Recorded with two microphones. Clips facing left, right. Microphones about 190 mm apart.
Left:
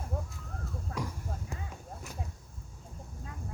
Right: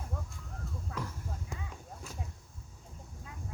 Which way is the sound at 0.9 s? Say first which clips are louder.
Left 3 dB; 45° left (ahead or behind).